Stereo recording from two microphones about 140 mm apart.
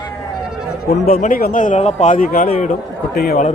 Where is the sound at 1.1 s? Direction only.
90° left; by 2.4 s 65° left (ahead or behind).